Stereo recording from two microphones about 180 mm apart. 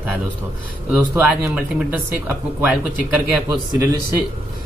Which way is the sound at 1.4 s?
10° right (ahead or behind).